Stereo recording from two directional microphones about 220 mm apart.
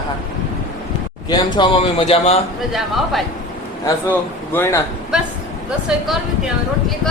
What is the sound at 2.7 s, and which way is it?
Speech, centre (ahead or behind).